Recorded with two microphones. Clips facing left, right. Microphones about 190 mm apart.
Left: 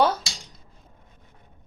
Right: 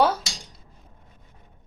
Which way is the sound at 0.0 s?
10° right (ahead or behind).